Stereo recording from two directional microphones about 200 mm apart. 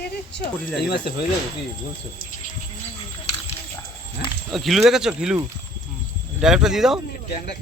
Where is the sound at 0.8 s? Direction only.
55° left (ahead or behind).